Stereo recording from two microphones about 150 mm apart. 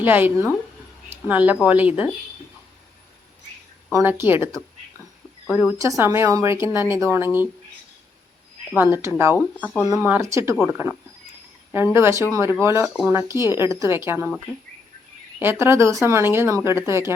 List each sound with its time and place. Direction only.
0.0 s speech: 10° right (ahead or behind)
3.9 s speech: 15° right (ahead or behind)
5.8 s speech: 20° right (ahead or behind)
8.7 s speech: 15° right (ahead or behind)
11.9 s speech: 15° right (ahead or behind)
15.4 s speech: 15° right (ahead or behind)